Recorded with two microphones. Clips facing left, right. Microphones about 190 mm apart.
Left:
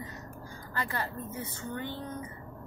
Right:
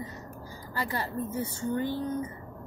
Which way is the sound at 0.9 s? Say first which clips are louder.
Right 4 dB; 35° right (ahead or behind).